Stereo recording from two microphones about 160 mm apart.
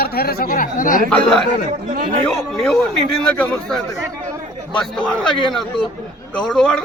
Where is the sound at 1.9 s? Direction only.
65° right (ahead or behind).